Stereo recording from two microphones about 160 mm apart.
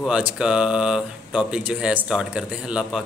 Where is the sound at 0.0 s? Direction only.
5° right (ahead or behind).